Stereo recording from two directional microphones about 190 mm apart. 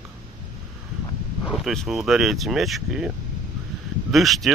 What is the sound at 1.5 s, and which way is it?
Speech, centre (ahead or behind).